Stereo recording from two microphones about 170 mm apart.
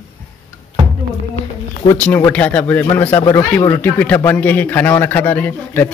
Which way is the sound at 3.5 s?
20° left (ahead or behind).